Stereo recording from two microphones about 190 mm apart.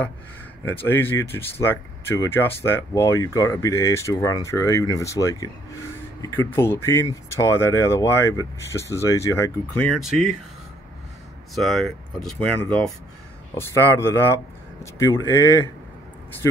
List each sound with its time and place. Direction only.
0.7 s speech: 10° left (ahead or behind)
11.5 s speech: centre (ahead or behind)